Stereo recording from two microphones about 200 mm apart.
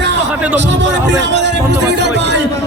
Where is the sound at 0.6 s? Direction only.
60° right (ahead or behind).